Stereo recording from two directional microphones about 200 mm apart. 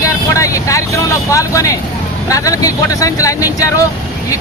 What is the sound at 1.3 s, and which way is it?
Speech, 15° left (ahead or behind).